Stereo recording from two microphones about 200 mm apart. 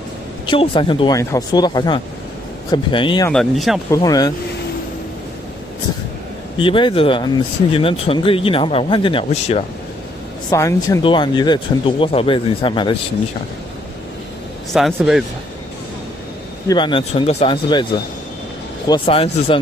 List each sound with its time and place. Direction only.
0.5 s speech: 25° left (ahead or behind)
3.3 s speech: centre (ahead or behind)
3.9 s speech: 20° left (ahead or behind)
6.6 s speech: 25° left (ahead or behind)
10.5 s speech: 15° left (ahead or behind)
14.7 s speech: centre (ahead or behind)
16.6 s speech: 25° left (ahead or behind)
18.9 s speech: 30° left (ahead or behind)